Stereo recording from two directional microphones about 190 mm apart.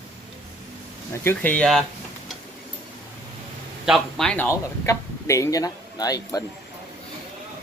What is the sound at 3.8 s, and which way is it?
Speech, centre (ahead or behind).